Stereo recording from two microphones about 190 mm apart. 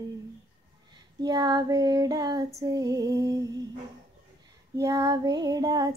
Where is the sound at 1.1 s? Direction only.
20° right (ahead or behind).